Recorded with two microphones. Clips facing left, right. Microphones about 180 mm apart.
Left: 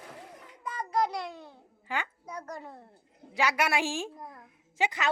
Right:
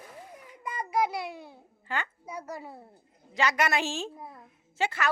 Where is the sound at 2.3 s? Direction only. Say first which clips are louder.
Right 2 dB; 10° right (ahead or behind).